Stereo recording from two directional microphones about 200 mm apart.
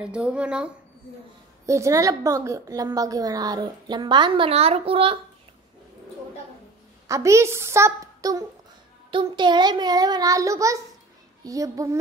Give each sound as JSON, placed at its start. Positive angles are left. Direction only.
{"t": 0.0, "sound": "speech", "side_deg": -5}
{"t": 1.7, "sound": "a woman's voice", "side_deg": -15}
{"t": 7.1, "sound": "a woman's voice", "side_deg": -15}